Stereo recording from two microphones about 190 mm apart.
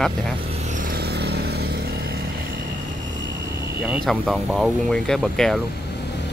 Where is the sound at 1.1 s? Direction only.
60° right (ahead or behind).